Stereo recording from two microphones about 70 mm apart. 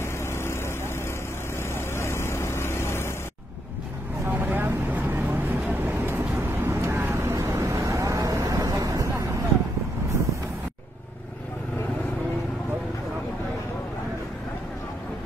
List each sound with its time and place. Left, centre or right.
0.0 s vehicle: left
4.3 s vehicle: right
7.3 s vehicle: right